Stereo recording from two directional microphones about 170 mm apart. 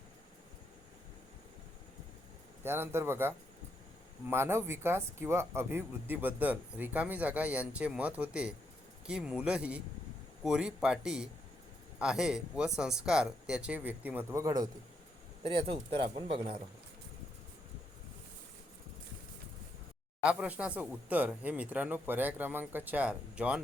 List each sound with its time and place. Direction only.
2.6 s speech: 15° right (ahead or behind)
15.4 s speech: 30° right (ahead or behind)
20.2 s speech: 5° right (ahead or behind)